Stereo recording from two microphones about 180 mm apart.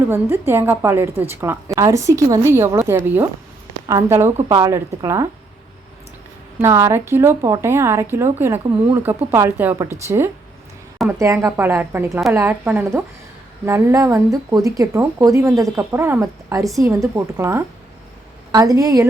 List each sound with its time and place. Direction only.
0.1 s a woman's voice: 15° right (ahead or behind)
6.6 s a woman's voice: 15° right (ahead or behind)
11.2 s a woman's voice: 15° right (ahead or behind)